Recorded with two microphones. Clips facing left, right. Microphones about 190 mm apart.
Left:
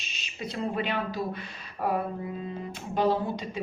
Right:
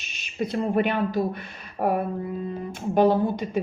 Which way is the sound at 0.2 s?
50° right (ahead or behind).